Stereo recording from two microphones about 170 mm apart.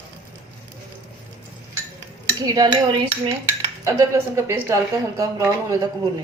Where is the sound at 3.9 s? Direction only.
15° right (ahead or behind).